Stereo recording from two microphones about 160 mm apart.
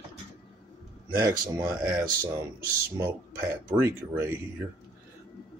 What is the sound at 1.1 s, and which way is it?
Speech, 20° right (ahead or behind).